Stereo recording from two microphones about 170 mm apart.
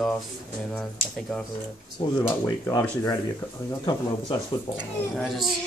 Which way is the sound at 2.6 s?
20° left (ahead or behind).